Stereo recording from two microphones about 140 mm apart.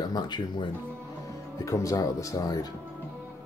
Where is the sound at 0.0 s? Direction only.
30° left (ahead or behind).